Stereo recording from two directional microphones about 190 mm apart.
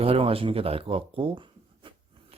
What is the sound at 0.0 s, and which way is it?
Speech, 30° right (ahead or behind).